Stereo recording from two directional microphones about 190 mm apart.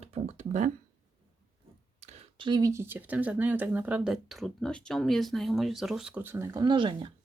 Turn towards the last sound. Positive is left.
turn(degrees=-25)  # may be behind; listen again after turning